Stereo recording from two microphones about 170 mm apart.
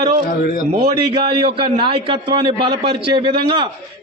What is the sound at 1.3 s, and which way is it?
A man's voice, 30° right (ahead or behind).